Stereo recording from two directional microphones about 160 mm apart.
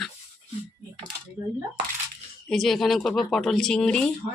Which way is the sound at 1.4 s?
15° right (ahead or behind).